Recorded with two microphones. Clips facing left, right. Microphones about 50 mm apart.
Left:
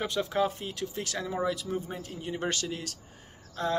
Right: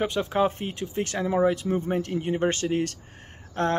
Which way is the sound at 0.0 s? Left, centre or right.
Right.